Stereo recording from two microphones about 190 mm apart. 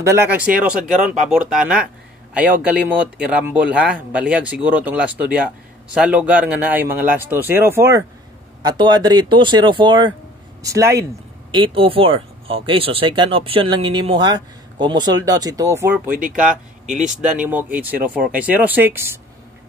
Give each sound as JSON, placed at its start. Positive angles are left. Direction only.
{"t": 0.0, "sound": "speech", "side_deg": -15}
{"t": 0.9, "sound": "speech", "side_deg": -40}
{"t": 1.3, "sound": "speech", "side_deg": -5}
{"t": 11.5, "sound": "speech", "side_deg": -30}
{"t": 16.2, "sound": "speech", "side_deg": -45}
{"t": 17.5, "sound": "speech", "side_deg": -10}